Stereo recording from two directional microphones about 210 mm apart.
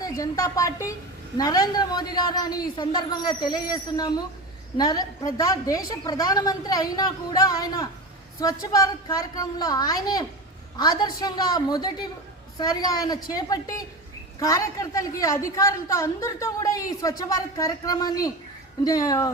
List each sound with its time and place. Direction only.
0.0 s a woman's voice: 15° left (ahead or behind)